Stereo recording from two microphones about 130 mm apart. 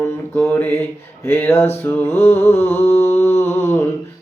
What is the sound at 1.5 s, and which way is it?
Mantra, 55° left (ahead or behind).